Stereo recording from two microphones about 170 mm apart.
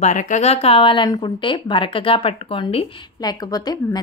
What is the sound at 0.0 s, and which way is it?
Speech, 45° left (ahead or behind).